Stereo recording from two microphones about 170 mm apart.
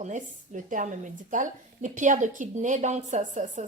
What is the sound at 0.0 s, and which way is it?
A woman's voice, 45° right (ahead or behind).